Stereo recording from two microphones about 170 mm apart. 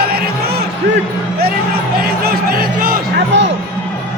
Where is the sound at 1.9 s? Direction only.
60° right (ahead or behind).